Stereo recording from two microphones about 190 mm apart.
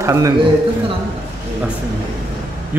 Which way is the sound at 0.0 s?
15° right (ahead or behind).